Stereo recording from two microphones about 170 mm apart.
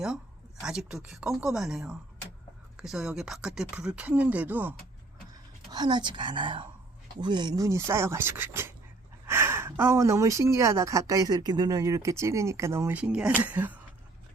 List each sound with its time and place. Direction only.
0.6 s speech: 5° right (ahead or behind)
5.7 s a woman's voice: 25° right (ahead or behind); by 13.7 s 10° right (ahead or behind)